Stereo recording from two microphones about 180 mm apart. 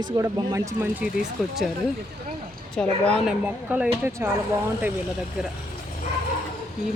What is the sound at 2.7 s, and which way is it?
Speech, 5° left (ahead or behind).